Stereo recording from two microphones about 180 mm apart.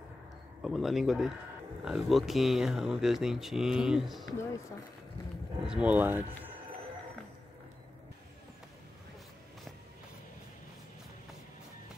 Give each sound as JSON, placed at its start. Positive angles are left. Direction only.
{"t": 0.6, "sound": "speech", "side_deg": 0}
{"t": 4.3, "sound": "speech", "side_deg": 15}
{"t": 5.7, "sound": "speech", "side_deg": -5}